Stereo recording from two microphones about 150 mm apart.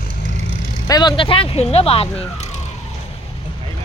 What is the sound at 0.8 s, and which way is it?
Speech, 30° left (ahead or behind).